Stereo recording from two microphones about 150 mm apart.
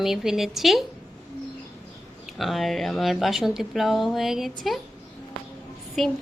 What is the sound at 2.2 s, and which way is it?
A woman's voice, centre (ahead or behind).